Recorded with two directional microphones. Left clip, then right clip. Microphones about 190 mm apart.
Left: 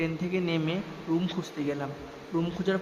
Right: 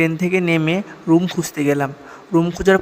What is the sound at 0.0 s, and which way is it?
A man's voice, 40° right (ahead or behind).